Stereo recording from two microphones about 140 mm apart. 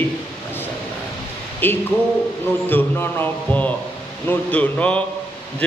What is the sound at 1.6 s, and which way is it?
A man's voice, 15° left (ahead or behind).